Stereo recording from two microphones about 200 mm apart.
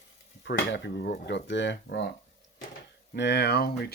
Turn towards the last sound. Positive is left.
turn(degrees=50)  # may be behind; listen again after turning